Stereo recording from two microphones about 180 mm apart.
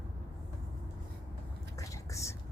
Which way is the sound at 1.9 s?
15° left (ahead or behind).